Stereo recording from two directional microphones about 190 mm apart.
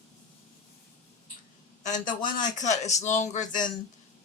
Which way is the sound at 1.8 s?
40° left (ahead or behind).